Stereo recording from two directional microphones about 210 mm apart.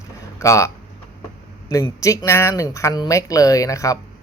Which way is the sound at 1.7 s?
15° left (ahead or behind).